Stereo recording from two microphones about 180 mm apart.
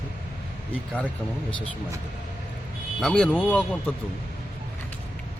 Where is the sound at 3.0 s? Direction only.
5° left (ahead or behind).